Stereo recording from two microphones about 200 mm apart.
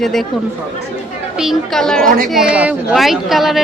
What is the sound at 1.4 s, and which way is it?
Speech, centre (ahead or behind).